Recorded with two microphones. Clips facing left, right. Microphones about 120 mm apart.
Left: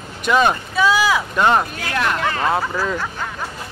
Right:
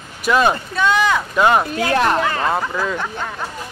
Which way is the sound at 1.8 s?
35° right (ahead or behind).